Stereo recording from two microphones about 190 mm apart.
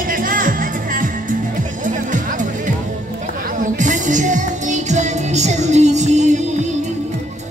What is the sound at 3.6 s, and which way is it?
Music, 40° right (ahead or behind).